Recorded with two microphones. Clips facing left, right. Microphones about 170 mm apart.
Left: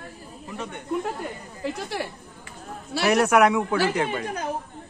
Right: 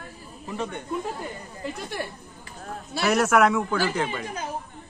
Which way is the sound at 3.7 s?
60° left (ahead or behind).